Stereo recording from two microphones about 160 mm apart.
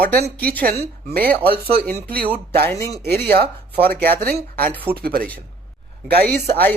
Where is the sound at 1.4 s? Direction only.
75° right (ahead or behind).